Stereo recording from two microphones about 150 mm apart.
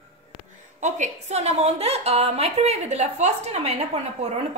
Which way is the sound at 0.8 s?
50° right (ahead or behind).